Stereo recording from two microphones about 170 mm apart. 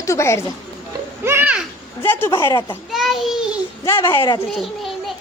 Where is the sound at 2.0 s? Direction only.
10° left (ahead or behind).